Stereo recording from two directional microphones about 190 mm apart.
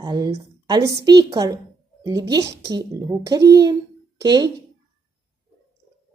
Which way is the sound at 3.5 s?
20° right (ahead or behind).